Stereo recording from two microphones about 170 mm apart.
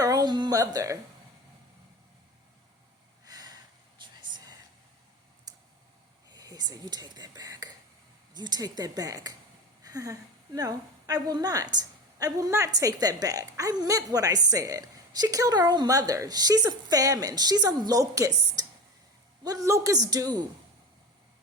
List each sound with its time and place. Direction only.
0.0 s music: 20° right (ahead or behind)
3.2 s a sound: 20° right (ahead or behind)
4.0 s whispering: 25° right (ahead or behind)
6.3 s whispering: 20° right (ahead or behind)
8.3 s a woman's voice: 25° right (ahead or behind)